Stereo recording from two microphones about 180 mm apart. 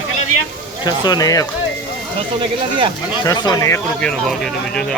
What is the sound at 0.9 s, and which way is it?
Speech, 20° left (ahead or behind).